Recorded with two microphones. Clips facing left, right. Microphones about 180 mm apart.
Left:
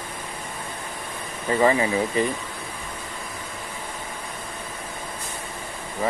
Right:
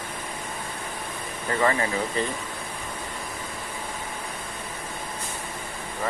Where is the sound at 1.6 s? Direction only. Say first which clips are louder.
Left 4 dB; 15° left (ahead or behind).